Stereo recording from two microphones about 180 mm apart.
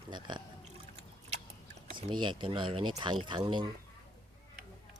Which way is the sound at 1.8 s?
25° right (ahead or behind).